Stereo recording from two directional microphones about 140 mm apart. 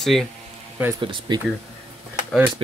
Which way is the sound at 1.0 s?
35° right (ahead or behind).